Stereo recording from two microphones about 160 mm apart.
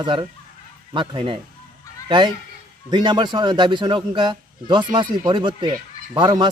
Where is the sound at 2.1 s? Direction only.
30° right (ahead or behind).